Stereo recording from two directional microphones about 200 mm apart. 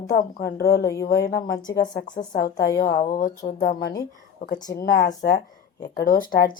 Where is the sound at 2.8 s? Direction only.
45° left (ahead or behind).